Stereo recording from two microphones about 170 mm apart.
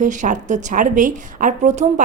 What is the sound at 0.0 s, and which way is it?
A woman's voice, 45° right (ahead or behind).